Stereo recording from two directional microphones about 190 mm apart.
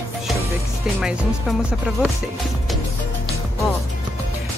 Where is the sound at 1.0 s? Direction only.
5° right (ahead or behind).